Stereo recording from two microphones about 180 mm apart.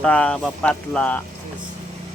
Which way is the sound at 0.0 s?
5° left (ahead or behind).